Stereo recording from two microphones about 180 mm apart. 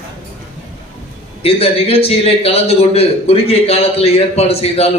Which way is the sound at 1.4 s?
30° left (ahead or behind).